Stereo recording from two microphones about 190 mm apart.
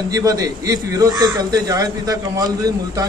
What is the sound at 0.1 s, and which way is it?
A man's voice, 20° right (ahead or behind).